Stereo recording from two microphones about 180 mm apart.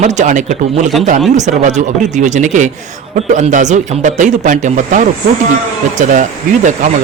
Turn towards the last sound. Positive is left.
turn(degrees=-45)  # may be behind; listen again after turning